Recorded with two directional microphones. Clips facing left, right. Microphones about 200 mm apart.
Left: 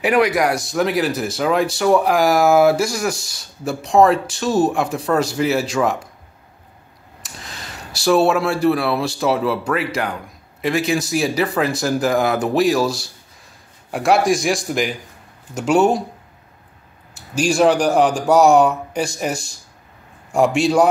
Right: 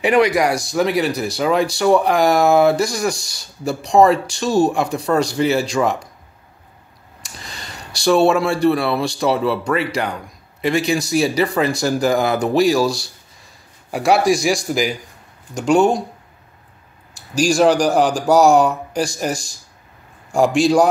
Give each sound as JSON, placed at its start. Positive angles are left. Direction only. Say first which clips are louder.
{"t": 0.0, "sound": "speech", "louder": "right 1 dB", "side_deg": 5}
{"t": 7.2, "sound": "speech", "louder": "even", "side_deg": 0}
{"t": 17.4, "sound": "speech", "louder": "right 1 dB", "side_deg": 0}
{"t": 20.4, "sound": "a man's voice", "louder": "right 2 dB", "side_deg": -35}